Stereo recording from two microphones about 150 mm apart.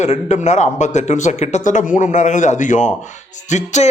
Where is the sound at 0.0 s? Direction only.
50° left (ahead or behind).